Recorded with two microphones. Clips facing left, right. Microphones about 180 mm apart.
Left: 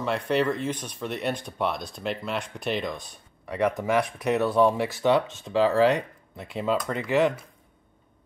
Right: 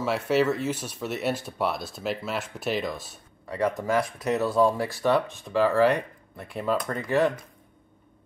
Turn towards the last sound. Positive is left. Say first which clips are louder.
# left 1 dB
turn(degrees=20)  # may be behind; listen again after turning